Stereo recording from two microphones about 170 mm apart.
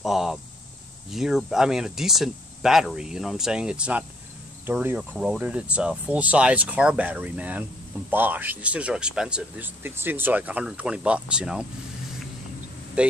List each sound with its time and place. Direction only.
0.0 s speech: centre (ahead or behind)
13.0 s speech: 5° right (ahead or behind)